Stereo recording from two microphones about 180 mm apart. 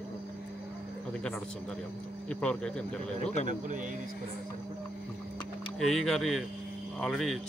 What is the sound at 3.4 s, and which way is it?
Speech, 45° right (ahead or behind).